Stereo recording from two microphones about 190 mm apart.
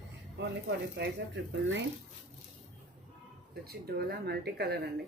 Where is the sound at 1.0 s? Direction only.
65° right (ahead or behind).